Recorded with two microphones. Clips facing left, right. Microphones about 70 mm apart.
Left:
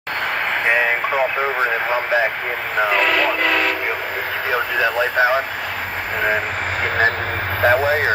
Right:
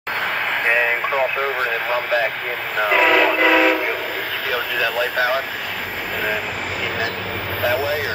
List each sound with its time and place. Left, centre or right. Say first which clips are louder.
0.7 s speech: left 1 dB; centre
2.8 s train whistle: right 2 dB; centre
4.5 s speech: left 3 dB; left
7.6 s speech: left 5 dB; left